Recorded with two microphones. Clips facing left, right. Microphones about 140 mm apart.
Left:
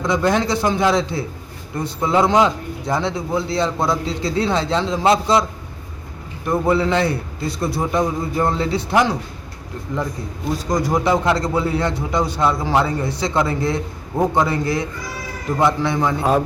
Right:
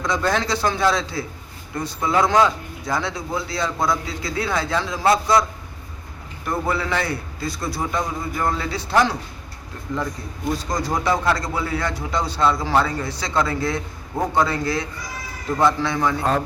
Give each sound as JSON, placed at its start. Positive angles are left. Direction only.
{"t": 0.0, "sound": "a man's voice", "side_deg": 20}
{"t": 6.5, "sound": "a man's voice", "side_deg": 20}